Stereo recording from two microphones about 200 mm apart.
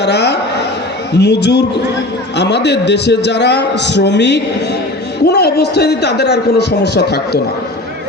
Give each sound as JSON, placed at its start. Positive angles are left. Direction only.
{"t": 0.0, "sound": "a man's voice", "side_deg": 55}